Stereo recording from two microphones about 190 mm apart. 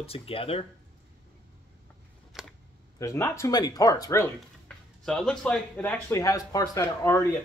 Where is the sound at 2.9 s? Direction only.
15° left (ahead or behind).